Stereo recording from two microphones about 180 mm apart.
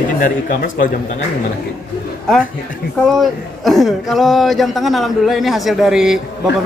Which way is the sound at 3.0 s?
Centre (ahead or behind).